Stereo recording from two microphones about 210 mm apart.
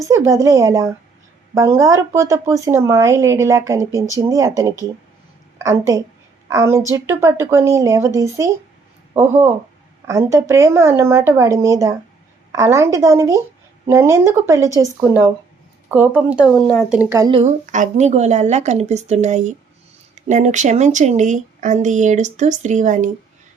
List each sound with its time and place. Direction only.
0.0 s speech: 15° right (ahead or behind)
10.1 s speech: 15° right (ahead or behind)
15.9 s speech: 10° right (ahead or behind)
17.4 s speech: 35° right (ahead or behind)